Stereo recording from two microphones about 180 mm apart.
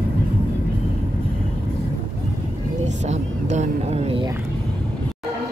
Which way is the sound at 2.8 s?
40° right (ahead or behind).